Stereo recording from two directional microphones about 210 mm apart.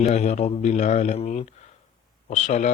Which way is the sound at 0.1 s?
30° left (ahead or behind).